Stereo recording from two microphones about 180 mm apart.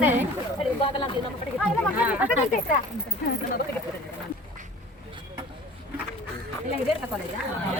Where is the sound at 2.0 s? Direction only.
5° right (ahead or behind).